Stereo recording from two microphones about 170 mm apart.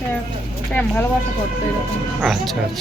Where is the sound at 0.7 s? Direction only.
10° left (ahead or behind).